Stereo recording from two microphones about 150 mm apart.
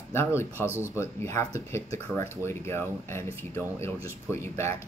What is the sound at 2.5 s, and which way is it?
Speech, 15° left (ahead or behind).